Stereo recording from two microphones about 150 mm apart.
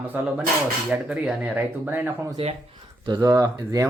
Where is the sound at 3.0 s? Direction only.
25° right (ahead or behind).